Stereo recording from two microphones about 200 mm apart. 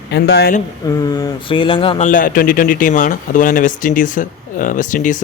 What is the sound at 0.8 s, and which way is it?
Speech, 20° left (ahead or behind).